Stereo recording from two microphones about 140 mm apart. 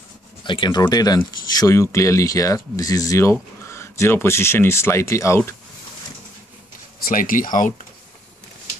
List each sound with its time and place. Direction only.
0.4 s speech: 35° left (ahead or behind)
7.1 s speech: 75° left (ahead or behind)